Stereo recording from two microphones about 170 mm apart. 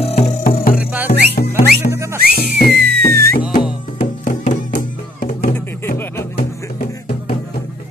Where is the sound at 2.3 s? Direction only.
65° left (ahead or behind).